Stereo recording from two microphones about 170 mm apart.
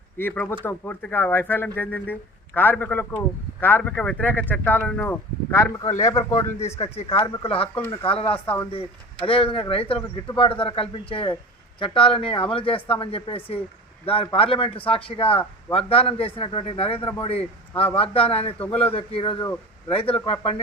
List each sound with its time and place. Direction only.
0.2 s speech: 10° left (ahead or behind)
6.6 s a man's voice: 40° left (ahead or behind)
9.2 s a man's voice: 35° left (ahead or behind)